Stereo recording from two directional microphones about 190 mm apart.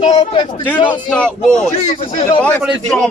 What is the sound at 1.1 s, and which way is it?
A man's voice, 5° left (ahead or behind).